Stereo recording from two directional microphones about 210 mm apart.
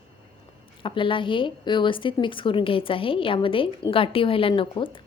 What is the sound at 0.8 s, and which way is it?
A woman's voice, 25° left (ahead or behind).